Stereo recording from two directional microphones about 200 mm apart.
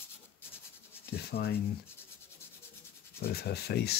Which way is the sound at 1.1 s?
50° left (ahead or behind).